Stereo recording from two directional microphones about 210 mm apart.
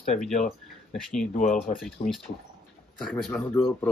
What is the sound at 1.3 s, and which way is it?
Speech, 35° left (ahead or behind).